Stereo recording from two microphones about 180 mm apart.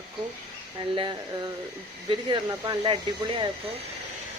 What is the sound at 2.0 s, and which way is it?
Speech, 25° right (ahead or behind).